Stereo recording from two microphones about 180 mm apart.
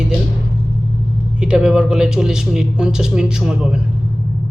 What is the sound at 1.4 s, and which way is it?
Speech, 5° right (ahead or behind).